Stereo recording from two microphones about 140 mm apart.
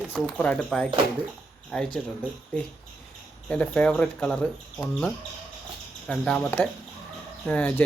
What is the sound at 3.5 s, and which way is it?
Speech, 10° left (ahead or behind).